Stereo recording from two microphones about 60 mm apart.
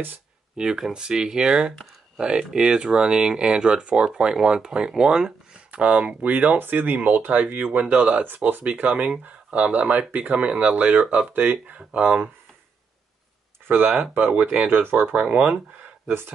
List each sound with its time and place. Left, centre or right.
0.6 s speech: centre
8.4 s speech: right
8.8 s speech: right
14.3 s speech: right